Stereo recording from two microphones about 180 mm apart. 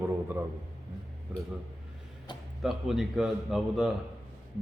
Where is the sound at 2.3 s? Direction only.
25° left (ahead or behind).